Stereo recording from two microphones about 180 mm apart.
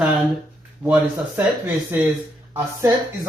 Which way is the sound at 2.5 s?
15° right (ahead or behind).